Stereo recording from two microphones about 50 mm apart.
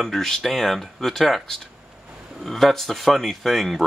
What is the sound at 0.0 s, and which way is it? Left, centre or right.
Speech, centre.